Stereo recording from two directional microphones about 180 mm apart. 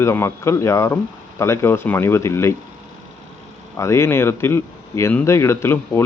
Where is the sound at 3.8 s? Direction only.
15° left (ahead or behind).